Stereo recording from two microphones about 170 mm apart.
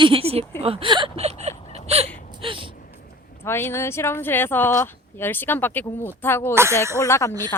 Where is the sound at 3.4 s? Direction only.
15° left (ahead or behind).